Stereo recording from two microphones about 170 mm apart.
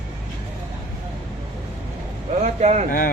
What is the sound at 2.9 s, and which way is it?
Speech, 55° left (ahead or behind).